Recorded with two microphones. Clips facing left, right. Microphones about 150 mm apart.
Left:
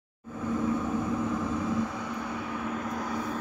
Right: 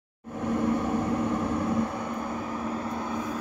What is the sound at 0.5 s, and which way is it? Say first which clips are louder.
Vehicle: right 3 dB; 75° right (ahead or behind).